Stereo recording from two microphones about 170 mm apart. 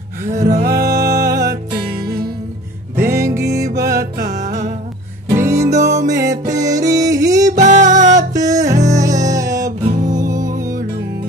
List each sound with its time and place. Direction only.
0.3 s music: 20° right (ahead or behind)
0.6 s music: 70° right (ahead or behind)
1.2 s music: 20° right (ahead or behind)
3.0 s music: 15° right (ahead or behind)
4.4 s music: 45° right (ahead or behind)
5.3 s music: 15° right (ahead or behind)
7.5 s music: 45° right (ahead or behind)
8.3 s music: 20° right (ahead or behind)